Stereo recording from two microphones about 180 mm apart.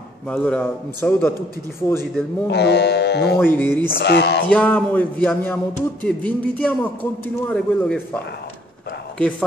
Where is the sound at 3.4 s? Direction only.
10° left (ahead or behind).